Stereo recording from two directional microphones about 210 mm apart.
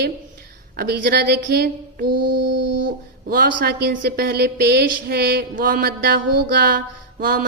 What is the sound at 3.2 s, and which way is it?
Speech, 45° right (ahead or behind).